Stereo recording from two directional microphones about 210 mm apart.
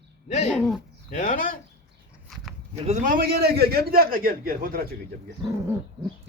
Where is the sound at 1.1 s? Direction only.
40° left (ahead or behind).